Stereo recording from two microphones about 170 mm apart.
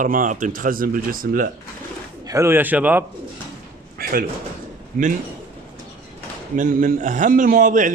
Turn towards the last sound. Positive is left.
turn(degrees=-50)  # may be behind; listen again after turning